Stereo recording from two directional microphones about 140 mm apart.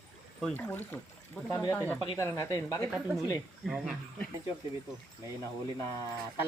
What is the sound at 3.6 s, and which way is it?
Speech, centre (ahead or behind).